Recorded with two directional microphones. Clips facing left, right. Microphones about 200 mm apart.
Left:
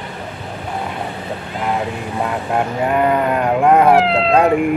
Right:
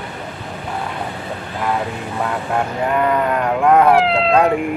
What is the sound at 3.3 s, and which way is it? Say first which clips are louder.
Speech: left 1 dB; 15° left (ahead or behind).